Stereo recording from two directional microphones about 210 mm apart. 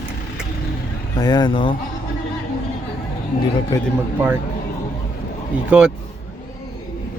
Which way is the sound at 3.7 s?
15° left (ahead or behind).